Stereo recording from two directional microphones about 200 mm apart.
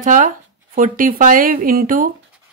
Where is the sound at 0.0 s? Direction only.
40° right (ahead or behind).